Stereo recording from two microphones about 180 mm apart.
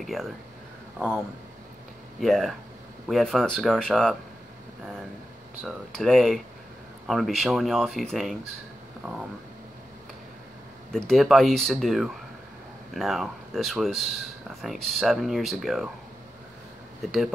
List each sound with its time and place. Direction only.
0.0 s speech: centre (ahead or behind)
2.1 s speech: centre (ahead or behind)
5.6 s speech: centre (ahead or behind)
10.9 s speech: 5° left (ahead or behind)